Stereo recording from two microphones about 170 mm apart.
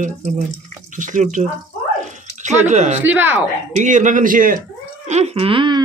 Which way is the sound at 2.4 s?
45° right (ahead or behind).